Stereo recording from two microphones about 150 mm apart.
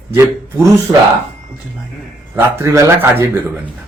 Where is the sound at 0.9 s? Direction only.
25° right (ahead or behind).